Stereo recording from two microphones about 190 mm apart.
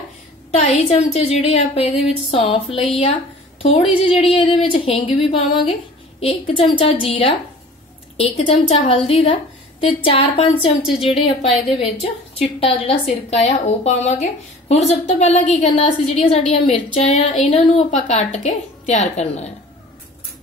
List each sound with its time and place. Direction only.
0.6 s a woman's voice: 35° left (ahead or behind)